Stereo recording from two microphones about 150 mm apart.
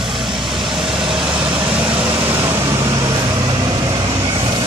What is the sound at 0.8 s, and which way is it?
Vehicle, 35° right (ahead or behind).